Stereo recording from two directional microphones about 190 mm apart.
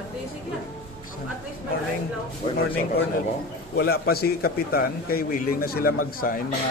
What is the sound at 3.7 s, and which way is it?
A man's voice, 55° left (ahead or behind).